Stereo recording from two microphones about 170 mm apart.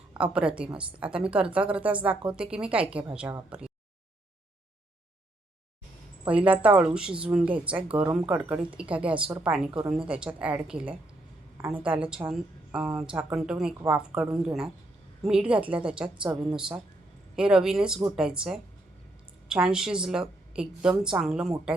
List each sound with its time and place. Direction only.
0.1 s a woman's voice: 5° right (ahead or behind)
6.2 s a woman's voice: 10° right (ahead or behind)